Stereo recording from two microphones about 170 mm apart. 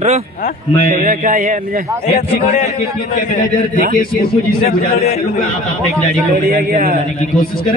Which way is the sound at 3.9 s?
65° left (ahead or behind).